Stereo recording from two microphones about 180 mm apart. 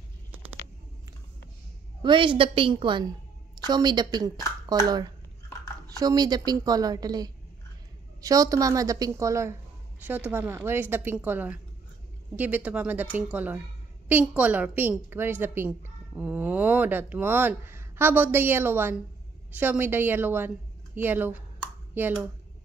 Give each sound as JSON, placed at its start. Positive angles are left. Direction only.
{"t": 2.0, "sound": "a woman's voice", "side_deg": -25}